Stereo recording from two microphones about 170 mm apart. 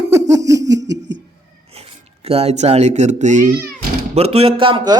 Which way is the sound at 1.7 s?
35° right (ahead or behind).